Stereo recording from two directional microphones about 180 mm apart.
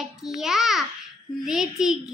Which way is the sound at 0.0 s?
Centre (ahead or behind).